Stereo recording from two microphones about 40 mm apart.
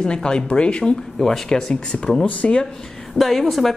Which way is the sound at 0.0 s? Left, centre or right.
Left.